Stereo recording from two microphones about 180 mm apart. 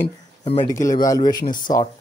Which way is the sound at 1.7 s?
40° left (ahead or behind).